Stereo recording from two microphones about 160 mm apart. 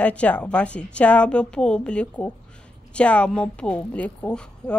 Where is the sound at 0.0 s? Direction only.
10° left (ahead or behind).